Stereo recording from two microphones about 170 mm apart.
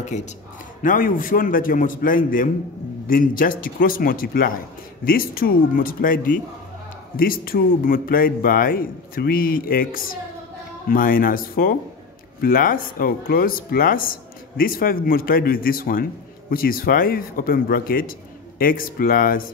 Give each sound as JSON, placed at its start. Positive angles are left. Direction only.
{"t": 0.1, "sound": "a man's voice", "side_deg": 45}